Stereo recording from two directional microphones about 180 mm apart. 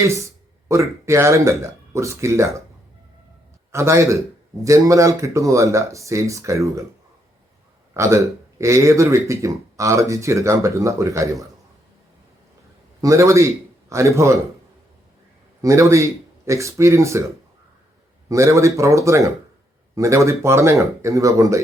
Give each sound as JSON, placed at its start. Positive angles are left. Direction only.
{"t": 0.7, "sound": "speech", "side_deg": -15}
{"t": 3.7, "sound": "speech", "side_deg": -15}
{"t": 7.9, "sound": "speech", "side_deg": -15}
{"t": 13.0, "sound": "speech", "side_deg": -15}
{"t": 15.6, "sound": "speech", "side_deg": -15}
{"t": 18.3, "sound": "speech", "side_deg": -15}